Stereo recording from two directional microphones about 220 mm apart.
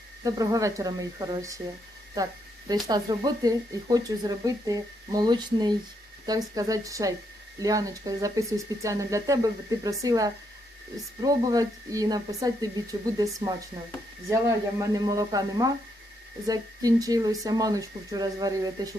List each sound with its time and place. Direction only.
0.3 s speech: 15° right (ahead or behind)
14.8 s speech: 15° right (ahead or behind)